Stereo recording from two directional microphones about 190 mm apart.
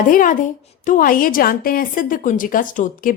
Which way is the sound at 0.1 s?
45° left (ahead or behind).